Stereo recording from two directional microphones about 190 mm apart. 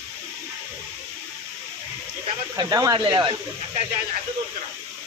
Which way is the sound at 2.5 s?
20° right (ahead or behind).